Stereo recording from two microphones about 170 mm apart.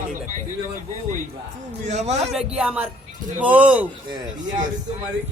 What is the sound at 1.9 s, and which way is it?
Speech, 40° right (ahead or behind).